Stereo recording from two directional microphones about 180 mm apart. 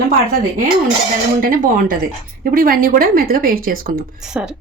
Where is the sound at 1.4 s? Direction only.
50° right (ahead or behind).